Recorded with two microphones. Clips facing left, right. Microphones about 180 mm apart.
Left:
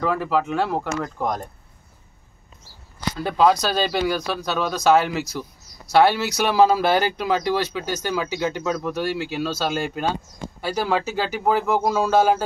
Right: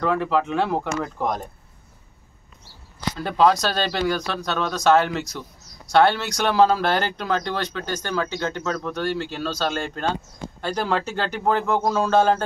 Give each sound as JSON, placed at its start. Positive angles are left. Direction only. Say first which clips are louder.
{"t": 0.0, "sound": "speech", "louder": "even", "side_deg": 5}
{"t": 3.2, "sound": "speech", "louder": "even", "side_deg": 5}